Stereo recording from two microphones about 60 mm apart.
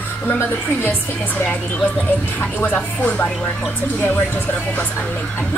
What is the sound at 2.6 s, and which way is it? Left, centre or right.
Speech, left.